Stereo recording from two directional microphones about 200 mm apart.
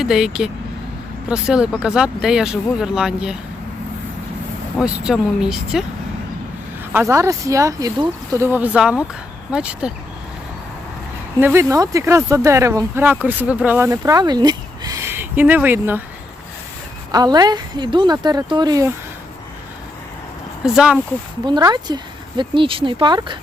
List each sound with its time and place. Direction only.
0.0 s speech: centre (ahead or behind)
4.8 s speech: 5° right (ahead or behind)
6.9 s speech: 15° right (ahead or behind)
11.3 s speech: 10° right (ahead or behind)
17.1 s speech: 20° right (ahead or behind)
20.7 s speech: 5° right (ahead or behind)
21.4 s speech: 20° right (ahead or behind)